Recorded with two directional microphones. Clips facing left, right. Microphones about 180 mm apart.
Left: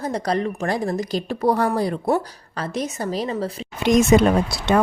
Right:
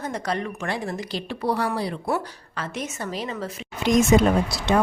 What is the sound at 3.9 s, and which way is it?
Speech, 65° left (ahead or behind).